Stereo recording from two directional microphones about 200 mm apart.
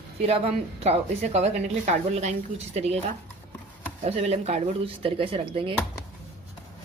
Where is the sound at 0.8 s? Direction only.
35° right (ahead or behind).